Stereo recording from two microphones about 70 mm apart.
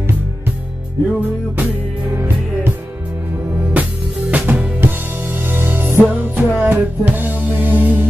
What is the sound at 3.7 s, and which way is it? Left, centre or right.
Music, centre.